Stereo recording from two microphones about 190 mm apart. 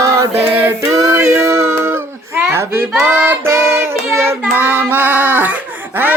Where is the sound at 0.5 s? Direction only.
15° right (ahead or behind).